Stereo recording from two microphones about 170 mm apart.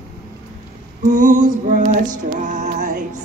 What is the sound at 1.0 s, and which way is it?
Female singing, 45° right (ahead or behind).